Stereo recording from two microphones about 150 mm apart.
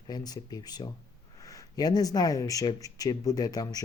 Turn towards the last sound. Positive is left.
turn(degrees=25)  # may be behind; listen again after turning